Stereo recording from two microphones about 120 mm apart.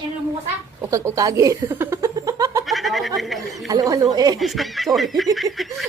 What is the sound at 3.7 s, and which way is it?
Speech, 30° right (ahead or behind).